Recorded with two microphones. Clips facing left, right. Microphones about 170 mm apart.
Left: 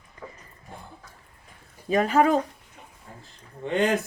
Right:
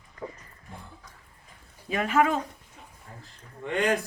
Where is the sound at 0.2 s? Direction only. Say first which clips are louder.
Right 4 dB; 20° right (ahead or behind).